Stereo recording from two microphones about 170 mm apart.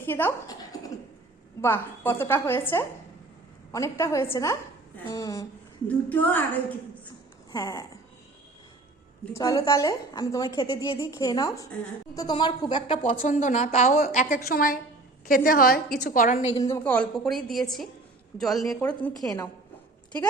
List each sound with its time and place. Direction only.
0.0 s a woman's voice: 15° left (ahead or behind)
7.5 s a woman's voice: 20° left (ahead or behind)
9.3 s a woman's voice: 20° left (ahead or behind)
13.1 s a woman's voice: 50° left (ahead or behind)
14.0 s a woman's voice: 55° left (ahead or behind)
16.6 s a woman's voice: 15° left (ahead or behind)